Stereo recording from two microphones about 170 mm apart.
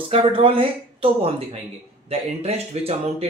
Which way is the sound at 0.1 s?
30° right (ahead or behind).